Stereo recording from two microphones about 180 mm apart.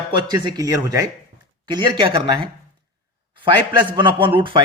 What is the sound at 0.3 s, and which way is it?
A man's voice, 20° right (ahead or behind).